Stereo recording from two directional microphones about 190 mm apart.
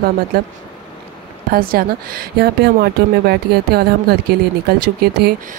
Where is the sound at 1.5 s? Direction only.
50° right (ahead or behind).